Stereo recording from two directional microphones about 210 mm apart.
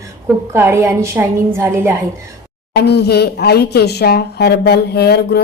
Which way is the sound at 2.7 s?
50° left (ahead or behind).